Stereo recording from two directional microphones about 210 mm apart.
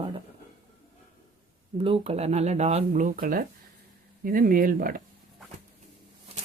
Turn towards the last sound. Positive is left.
turn(degrees=-30)  # may be behind; listen again after turning